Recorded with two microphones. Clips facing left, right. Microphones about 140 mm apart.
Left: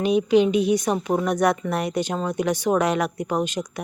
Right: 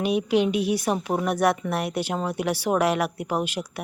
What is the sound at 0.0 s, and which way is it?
A woman's voice, 5° right (ahead or behind).